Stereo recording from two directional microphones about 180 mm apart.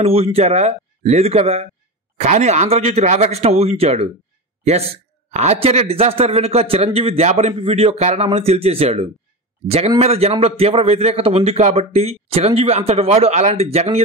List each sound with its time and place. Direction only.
0.0 s speech: 35° right (ahead or behind)